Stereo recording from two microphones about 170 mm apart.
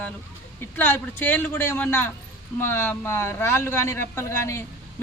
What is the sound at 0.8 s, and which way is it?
A man's voice, 10° left (ahead or behind).